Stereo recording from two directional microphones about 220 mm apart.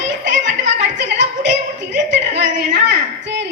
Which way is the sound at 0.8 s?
55° right (ahead or behind).